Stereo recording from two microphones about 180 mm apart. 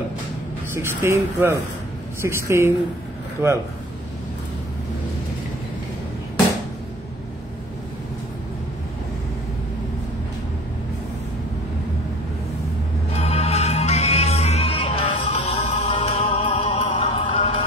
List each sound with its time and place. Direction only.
0.7 s speech: 15° right (ahead or behind)
13.1 s music: 35° left (ahead or behind)